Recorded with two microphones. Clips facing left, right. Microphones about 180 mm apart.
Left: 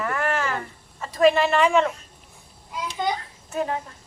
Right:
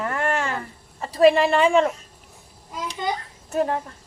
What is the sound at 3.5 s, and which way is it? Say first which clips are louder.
Speech: right 4 dB; 45° right (ahead or behind).